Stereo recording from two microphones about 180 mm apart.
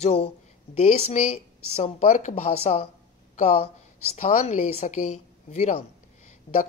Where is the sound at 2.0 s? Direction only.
45° left (ahead or behind).